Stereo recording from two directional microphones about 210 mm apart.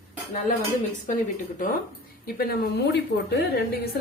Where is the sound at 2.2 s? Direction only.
45° left (ahead or behind).